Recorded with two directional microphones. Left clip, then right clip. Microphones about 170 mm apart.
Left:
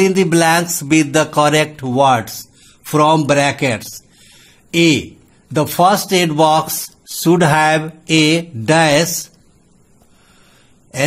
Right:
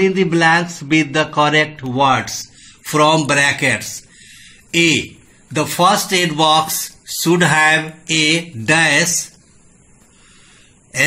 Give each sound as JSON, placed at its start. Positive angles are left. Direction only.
{"t": 0.0, "sound": "music", "side_deg": 90}
{"t": 2.8, "sound": "mantra", "side_deg": 70}
{"t": 4.6, "sound": "speech", "side_deg": 75}
{"t": 5.8, "sound": "mantra", "side_deg": 75}